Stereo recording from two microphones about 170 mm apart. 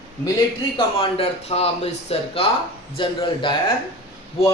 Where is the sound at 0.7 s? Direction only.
35° left (ahead or behind).